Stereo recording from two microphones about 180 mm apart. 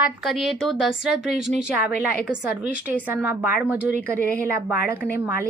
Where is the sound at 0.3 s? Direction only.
Centre (ahead or behind).